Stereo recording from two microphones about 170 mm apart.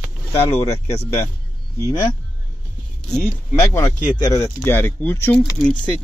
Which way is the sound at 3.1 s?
15° left (ahead or behind).